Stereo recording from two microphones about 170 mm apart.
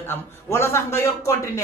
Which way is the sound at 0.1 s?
15° left (ahead or behind).